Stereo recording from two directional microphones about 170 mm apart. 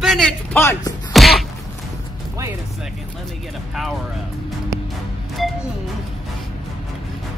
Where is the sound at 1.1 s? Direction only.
Centre (ahead or behind).